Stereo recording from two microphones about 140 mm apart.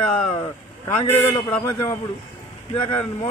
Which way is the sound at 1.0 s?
20° left (ahead or behind).